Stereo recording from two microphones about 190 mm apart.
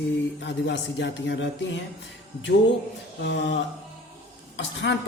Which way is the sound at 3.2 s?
70° left (ahead or behind).